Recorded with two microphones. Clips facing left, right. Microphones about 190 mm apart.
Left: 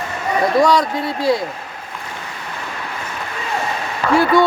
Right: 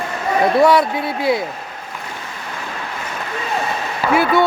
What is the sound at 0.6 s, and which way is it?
Speech, 5° right (ahead or behind).